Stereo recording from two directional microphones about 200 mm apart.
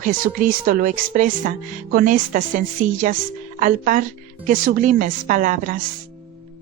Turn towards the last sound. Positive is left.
turn(degrees=-40)  # may be behind; listen again after turning